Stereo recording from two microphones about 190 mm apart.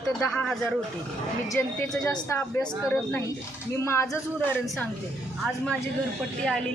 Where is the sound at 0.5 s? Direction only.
Centre (ahead or behind).